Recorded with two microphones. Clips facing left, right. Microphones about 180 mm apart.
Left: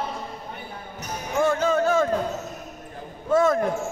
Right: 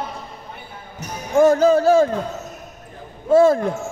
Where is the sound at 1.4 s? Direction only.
40° right (ahead or behind).